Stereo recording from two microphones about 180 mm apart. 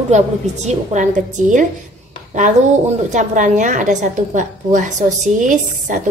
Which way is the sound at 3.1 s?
45° right (ahead or behind).